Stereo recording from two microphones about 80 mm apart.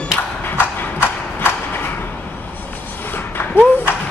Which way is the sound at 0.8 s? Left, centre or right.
Left.